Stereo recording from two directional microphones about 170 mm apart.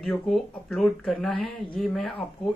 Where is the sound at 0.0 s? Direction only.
5° left (ahead or behind).